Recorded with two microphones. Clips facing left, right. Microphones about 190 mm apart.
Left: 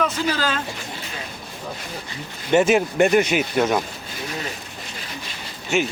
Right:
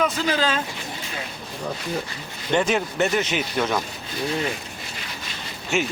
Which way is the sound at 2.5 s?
10° left (ahead or behind).